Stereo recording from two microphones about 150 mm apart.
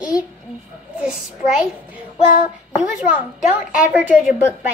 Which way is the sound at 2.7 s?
5° right (ahead or behind).